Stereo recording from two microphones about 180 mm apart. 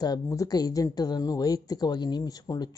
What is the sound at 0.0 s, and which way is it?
A woman's voice, 20° left (ahead or behind).